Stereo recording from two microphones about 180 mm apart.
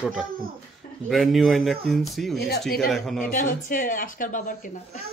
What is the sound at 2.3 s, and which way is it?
Speech, 65° left (ahead or behind).